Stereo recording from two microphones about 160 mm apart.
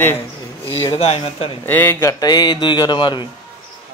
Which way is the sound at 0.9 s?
40° left (ahead or behind).